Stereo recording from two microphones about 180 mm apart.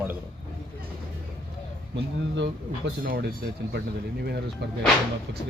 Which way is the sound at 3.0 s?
60° right (ahead or behind).